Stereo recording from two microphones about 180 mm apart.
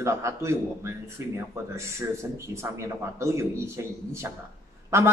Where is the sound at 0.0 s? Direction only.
15° right (ahead or behind).